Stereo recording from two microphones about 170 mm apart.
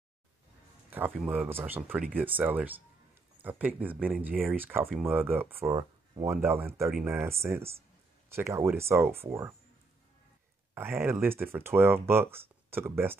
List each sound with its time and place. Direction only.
0.8 s speech: 10° right (ahead or behind)
10.7 s speech: 15° right (ahead or behind)